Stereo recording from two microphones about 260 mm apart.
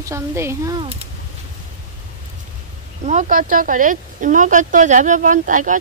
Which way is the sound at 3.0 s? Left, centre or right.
Right.